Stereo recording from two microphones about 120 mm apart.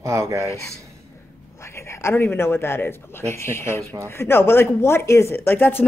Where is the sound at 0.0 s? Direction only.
25° right (ahead or behind).